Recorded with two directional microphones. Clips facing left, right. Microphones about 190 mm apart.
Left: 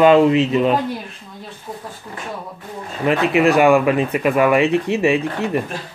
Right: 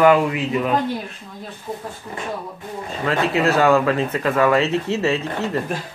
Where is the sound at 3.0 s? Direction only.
20° left (ahead or behind).